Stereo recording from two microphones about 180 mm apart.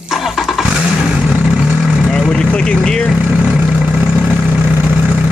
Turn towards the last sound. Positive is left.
turn(degrees=-5)  # may be behind; listen again after turning